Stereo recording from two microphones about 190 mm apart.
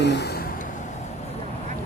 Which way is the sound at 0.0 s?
65° left (ahead or behind).